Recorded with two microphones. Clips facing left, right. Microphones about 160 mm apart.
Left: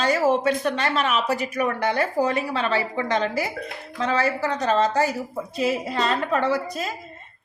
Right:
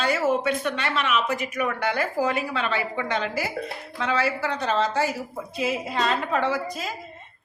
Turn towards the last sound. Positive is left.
turn(degrees=45)  # may be behind; listen again after turning